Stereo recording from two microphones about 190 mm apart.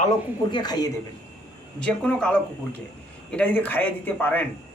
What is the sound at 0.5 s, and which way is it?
Speech, 20° left (ahead or behind).